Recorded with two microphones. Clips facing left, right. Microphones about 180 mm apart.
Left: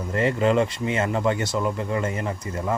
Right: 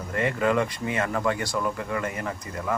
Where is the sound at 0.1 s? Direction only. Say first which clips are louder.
Left 3 dB; 25° left (ahead or behind).